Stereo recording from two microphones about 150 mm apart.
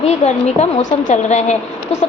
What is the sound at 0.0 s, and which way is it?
A woman's voice, 50° left (ahead or behind).